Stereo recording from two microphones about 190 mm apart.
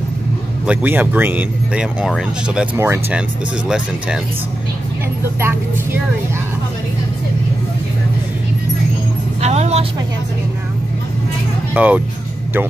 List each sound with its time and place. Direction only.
0.7 s speech: 10° right (ahead or behind)
9.4 s vehicle: 35° right (ahead or behind)
11.7 s speech: 10° right (ahead or behind)